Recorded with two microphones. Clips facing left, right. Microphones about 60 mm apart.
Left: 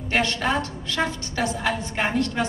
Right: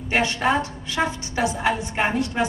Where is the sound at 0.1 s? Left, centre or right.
Centre.